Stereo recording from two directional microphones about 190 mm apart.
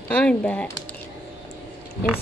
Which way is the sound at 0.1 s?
5° left (ahead or behind).